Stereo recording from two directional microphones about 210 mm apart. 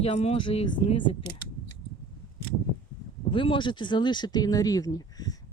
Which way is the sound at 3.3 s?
25° left (ahead or behind).